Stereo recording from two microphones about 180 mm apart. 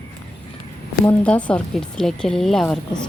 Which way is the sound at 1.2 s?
5° left (ahead or behind).